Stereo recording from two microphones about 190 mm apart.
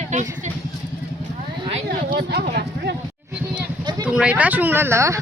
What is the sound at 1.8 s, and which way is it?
Speech, 60° right (ahead or behind).